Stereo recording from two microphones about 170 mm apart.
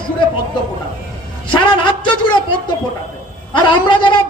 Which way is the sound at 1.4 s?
30° left (ahead or behind).